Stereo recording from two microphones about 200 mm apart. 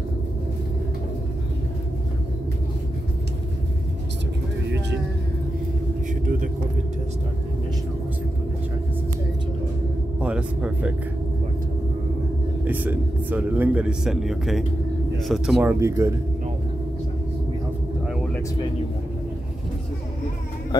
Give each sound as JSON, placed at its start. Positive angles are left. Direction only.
{"t": 6.2, "sound": "vehicle", "side_deg": -40}
{"t": 10.2, "sound": "music", "side_deg": -5}
{"t": 12.6, "sound": "speech", "side_deg": -10}
{"t": 18.0, "sound": "vehicle", "side_deg": 0}